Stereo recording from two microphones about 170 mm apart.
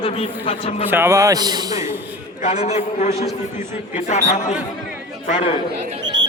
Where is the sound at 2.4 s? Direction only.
40° left (ahead or behind).